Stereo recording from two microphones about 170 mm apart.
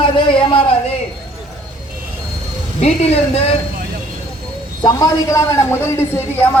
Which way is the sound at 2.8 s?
35° left (ahead or behind).